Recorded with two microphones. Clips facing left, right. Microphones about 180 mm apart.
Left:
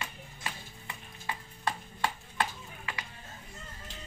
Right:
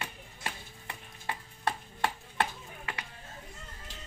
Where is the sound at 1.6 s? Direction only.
55° right (ahead or behind).